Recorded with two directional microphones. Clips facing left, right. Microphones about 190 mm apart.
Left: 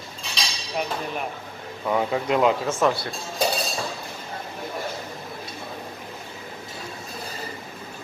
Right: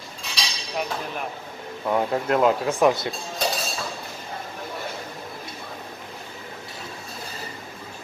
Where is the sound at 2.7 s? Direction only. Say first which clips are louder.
Right 3 dB; 15° right (ahead or behind).